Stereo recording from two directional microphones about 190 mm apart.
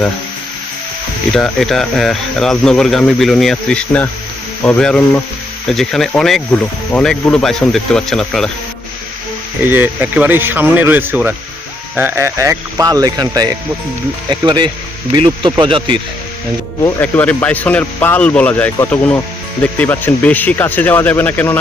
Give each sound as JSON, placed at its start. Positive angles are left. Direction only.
{"t": 1.3, "sound": "speech", "side_deg": 0}
{"t": 9.6, "sound": "speech", "side_deg": -10}
{"t": 16.8, "sound": "speech", "side_deg": 10}